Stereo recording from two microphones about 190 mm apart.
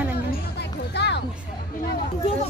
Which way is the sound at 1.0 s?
60° left (ahead or behind).